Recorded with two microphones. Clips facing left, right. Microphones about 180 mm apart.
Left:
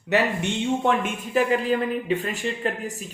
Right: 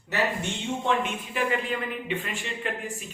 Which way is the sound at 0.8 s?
45° left (ahead or behind).